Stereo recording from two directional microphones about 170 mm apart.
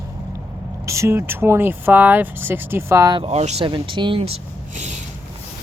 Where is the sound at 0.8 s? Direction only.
15° right (ahead or behind).